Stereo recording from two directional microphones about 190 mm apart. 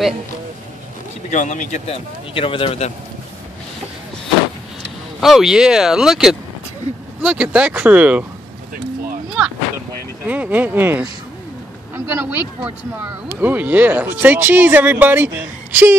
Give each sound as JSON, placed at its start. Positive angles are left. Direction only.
{"t": 1.3, "sound": "a man's voice", "side_deg": 40}
{"t": 5.2, "sound": "speech", "side_deg": 0}
{"t": 10.2, "sound": "speech", "side_deg": -10}